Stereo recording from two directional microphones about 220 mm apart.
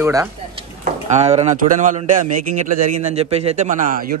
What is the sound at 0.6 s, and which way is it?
A man's voice, 30° right (ahead or behind).